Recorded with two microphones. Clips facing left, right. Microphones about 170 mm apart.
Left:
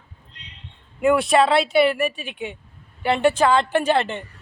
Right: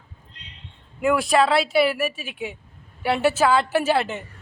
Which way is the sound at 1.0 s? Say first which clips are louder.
Left 2 dB; centre (ahead or behind).